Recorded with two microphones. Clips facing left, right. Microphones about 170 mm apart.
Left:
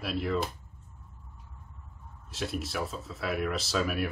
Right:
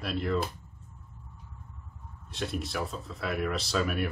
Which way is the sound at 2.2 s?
Centre (ahead or behind).